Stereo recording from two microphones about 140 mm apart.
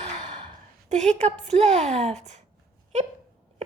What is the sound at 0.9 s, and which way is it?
A woman's voice, 55° right (ahead or behind).